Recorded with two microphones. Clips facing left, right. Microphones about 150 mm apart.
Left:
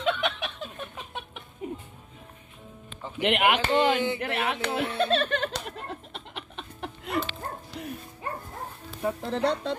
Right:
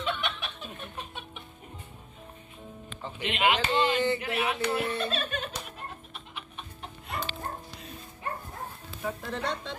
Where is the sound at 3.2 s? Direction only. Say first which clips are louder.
Left 4 dB; 65° left (ahead or behind).